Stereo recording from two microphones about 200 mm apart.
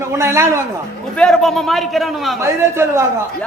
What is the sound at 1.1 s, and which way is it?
A man's voice, 5° left (ahead or behind).